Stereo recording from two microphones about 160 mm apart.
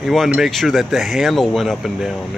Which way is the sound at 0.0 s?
Centre (ahead or behind).